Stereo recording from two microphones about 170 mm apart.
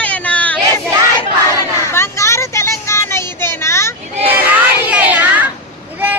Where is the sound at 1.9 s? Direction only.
15° left (ahead or behind).